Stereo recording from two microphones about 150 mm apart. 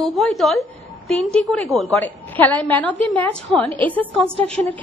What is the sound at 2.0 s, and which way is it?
A woman's voice, 10° left (ahead or behind).